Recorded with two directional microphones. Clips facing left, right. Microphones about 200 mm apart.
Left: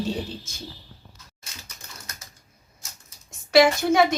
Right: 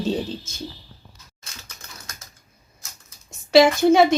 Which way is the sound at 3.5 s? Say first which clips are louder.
Right 4 dB; 25° right (ahead or behind).